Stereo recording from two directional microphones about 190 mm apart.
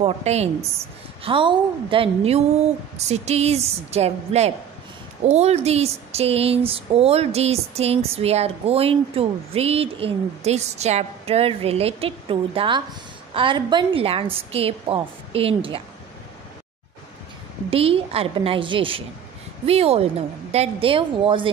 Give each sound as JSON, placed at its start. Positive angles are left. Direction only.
{"t": 0.0, "sound": "a woman's voice", "side_deg": -35}
{"t": 17.6, "sound": "a woman's voice", "side_deg": -30}